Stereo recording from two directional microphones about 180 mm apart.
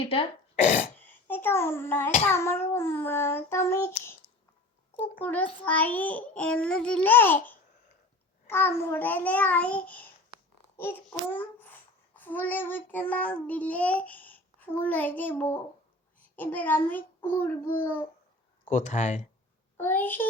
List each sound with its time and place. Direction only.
0.0 s speech: 30° left (ahead or behind)
0.6 s throat clearing: 45° left (ahead or behind)
0.9 s babbling: 10° left (ahead or behind)
2.3 s a child's voice: 15° left (ahead or behind)
5.2 s a child's voice: 10° left (ahead or behind)
11.3 s a child's voice: 10° left (ahead or behind)
18.7 s speech: 45° left (ahead or behind)
19.7 s a child's voice: 10° left (ahead or behind)